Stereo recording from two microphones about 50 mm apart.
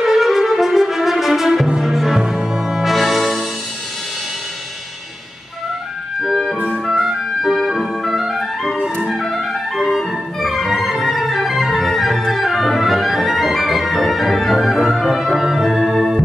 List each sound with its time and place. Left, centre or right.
0.0 s music: centre
6.2 s music: centre